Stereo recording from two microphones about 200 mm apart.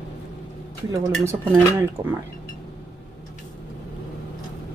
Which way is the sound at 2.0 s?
15° right (ahead or behind).